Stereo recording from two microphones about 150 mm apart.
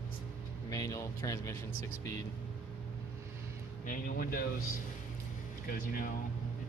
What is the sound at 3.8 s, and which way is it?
Speech, 70° left (ahead or behind).